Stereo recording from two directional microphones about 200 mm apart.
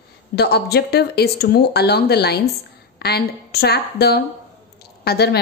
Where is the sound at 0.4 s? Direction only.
55° left (ahead or behind).